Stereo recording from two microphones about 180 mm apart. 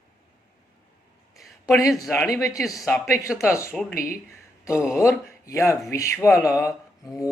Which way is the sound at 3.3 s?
15° left (ahead or behind).